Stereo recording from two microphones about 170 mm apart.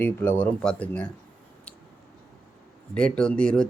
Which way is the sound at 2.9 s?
5° left (ahead or behind).